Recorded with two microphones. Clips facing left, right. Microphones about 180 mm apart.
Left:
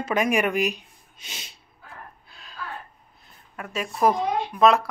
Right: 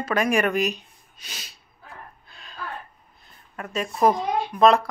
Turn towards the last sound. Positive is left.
turn(degrees=5)  # may be behind; listen again after turning